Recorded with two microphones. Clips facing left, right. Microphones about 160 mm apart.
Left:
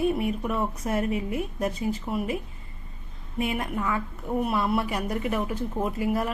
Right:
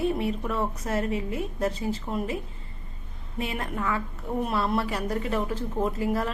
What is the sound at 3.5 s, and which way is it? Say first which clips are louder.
A woman's voice: left 1 dB; 15° left (ahead or behind).